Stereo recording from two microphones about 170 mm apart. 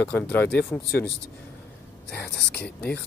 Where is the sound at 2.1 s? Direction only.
75° left (ahead or behind).